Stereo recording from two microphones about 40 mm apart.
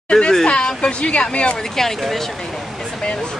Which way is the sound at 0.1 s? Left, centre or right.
Centre.